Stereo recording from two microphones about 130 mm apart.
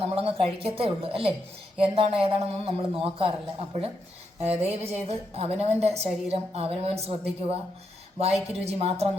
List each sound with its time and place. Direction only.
0.0 s a woman's voice: 45° right (ahead or behind)
4.4 s a woman's voice: 50° right (ahead or behind)